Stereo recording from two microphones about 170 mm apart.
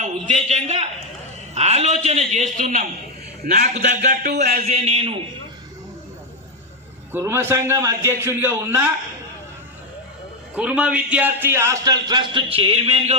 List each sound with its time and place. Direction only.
0.0 s a man's voice: 40° right (ahead or behind)
3.4 s a man's voice: 60° right (ahead or behind)
3.8 s a man's voice: 45° right (ahead or behind)
7.1 s a man's voice: 15° right (ahead or behind)
10.5 s a man's voice: 5° right (ahead or behind); by 13.1 s 35° right (ahead or behind)